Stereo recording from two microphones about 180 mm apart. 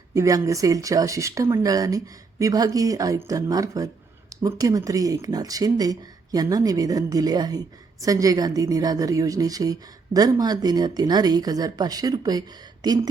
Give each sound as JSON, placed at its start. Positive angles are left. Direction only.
{"t": 0.1, "sound": "a woman's voice", "side_deg": -20}